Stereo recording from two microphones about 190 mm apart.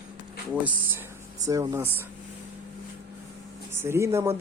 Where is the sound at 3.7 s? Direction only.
15° right (ahead or behind).